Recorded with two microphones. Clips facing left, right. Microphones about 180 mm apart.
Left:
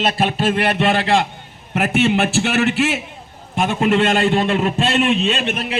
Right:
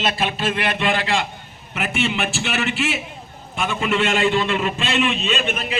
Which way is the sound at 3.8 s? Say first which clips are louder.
Left 4 dB; 55° left (ahead or behind).